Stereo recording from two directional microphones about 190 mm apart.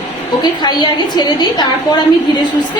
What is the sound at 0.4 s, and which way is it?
A woman's voice, 25° left (ahead or behind).